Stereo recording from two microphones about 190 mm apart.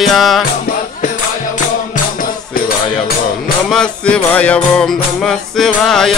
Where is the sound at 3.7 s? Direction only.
5° left (ahead or behind).